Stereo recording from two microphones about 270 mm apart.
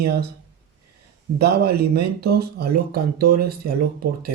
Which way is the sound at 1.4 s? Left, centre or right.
Right.